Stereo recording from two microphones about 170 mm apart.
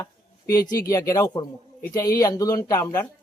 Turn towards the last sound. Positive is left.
turn(degrees=20)  # may be behind; listen again after turning